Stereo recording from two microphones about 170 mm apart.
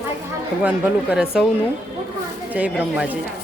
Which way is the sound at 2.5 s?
5° right (ahead or behind).